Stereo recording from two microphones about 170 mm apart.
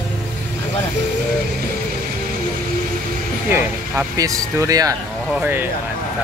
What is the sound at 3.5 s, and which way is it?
Speech, 15° right (ahead or behind).